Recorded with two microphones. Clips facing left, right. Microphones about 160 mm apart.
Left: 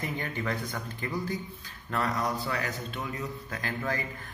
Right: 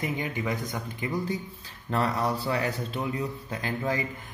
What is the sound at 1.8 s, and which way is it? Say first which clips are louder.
A man's voice: right 3 dB; 30° right (ahead or behind).